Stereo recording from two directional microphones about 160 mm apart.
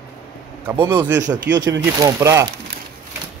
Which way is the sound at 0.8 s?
30° right (ahead or behind).